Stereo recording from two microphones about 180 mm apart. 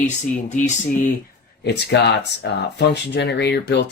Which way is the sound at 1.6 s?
70° left (ahead or behind).